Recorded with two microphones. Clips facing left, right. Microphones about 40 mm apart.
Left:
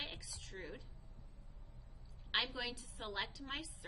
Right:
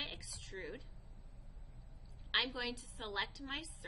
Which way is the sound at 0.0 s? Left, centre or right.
Centre.